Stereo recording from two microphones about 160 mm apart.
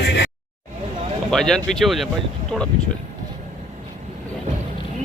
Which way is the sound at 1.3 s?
5° left (ahead or behind).